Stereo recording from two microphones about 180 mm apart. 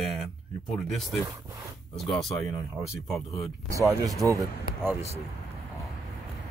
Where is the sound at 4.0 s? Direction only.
20° right (ahead or behind).